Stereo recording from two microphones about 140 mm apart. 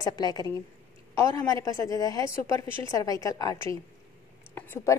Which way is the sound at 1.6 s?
25° left (ahead or behind).